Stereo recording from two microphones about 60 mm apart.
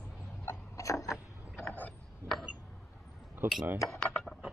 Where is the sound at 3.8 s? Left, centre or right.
Centre.